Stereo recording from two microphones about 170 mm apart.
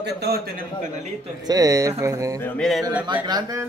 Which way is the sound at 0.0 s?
75° right (ahead or behind).